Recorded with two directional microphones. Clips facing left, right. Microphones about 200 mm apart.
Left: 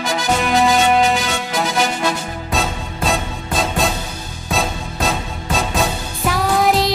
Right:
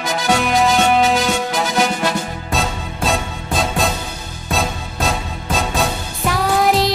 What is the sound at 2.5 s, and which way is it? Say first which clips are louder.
Music: even; centre (ahead or behind).